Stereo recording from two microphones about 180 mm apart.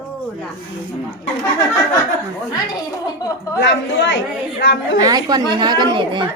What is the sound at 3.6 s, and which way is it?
Speech, 90° left.